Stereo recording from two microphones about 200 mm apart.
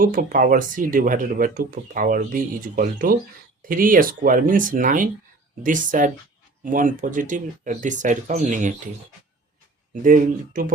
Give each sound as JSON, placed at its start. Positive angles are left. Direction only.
{"t": 0.0, "sound": "speech", "side_deg": -45}
{"t": 9.9, "sound": "speech", "side_deg": -40}